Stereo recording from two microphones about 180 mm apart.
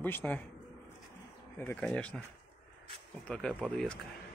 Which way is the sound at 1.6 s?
10° left (ahead or behind).